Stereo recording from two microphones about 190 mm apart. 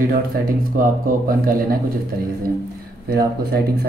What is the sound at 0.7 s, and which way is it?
Speech, 50° right (ahead or behind).